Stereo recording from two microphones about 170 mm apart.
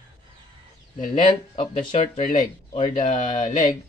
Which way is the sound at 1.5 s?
40° left (ahead or behind).